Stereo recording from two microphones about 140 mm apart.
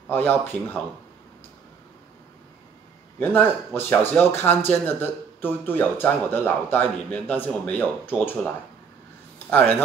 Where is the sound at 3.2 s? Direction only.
15° left (ahead or behind).